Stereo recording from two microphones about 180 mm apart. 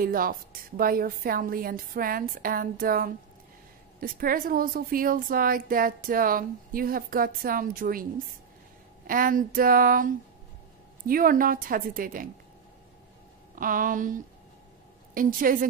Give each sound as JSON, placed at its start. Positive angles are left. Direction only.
{"t": 0.0, "sound": "a woman's voice", "side_deg": -50}
{"t": 13.6, "sound": "a woman's voice", "side_deg": -50}